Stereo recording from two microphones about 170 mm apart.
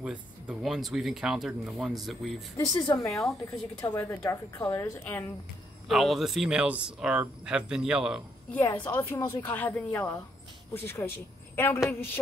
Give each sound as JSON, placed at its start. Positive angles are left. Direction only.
{"t": 0.0, "sound": "speech", "side_deg": -5}
{"t": 2.5, "sound": "speech", "side_deg": 20}
{"t": 3.1, "sound": "speech", "side_deg": 0}
{"t": 3.8, "sound": "a woman's voice", "side_deg": 10}
{"t": 5.9, "sound": "speech", "side_deg": 0}
{"t": 8.6, "sound": "a woman's voice", "side_deg": 10}